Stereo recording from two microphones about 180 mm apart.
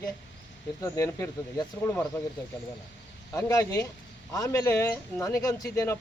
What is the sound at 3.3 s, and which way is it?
Speech, 15° left (ahead or behind).